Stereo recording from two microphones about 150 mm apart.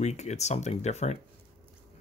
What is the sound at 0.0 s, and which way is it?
Speech, 50° left (ahead or behind).